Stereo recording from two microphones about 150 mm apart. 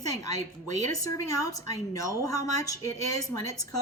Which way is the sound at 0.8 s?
25° left (ahead or behind).